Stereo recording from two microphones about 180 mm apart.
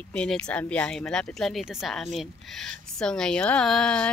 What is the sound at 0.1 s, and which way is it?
Speech, 5° left (ahead or behind).